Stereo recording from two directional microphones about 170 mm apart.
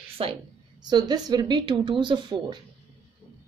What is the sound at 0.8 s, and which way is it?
Speech, 25° right (ahead or behind).